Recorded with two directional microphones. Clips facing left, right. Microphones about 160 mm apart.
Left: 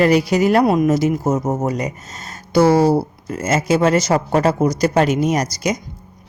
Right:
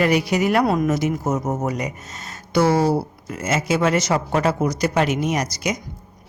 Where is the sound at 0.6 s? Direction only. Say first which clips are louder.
Left 4 dB; 20° left (ahead or behind).